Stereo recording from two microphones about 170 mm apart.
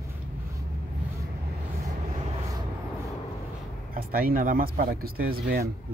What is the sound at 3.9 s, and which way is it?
Speech, 60° right (ahead or behind).